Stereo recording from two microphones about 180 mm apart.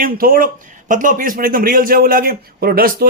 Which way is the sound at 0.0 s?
50° right (ahead or behind).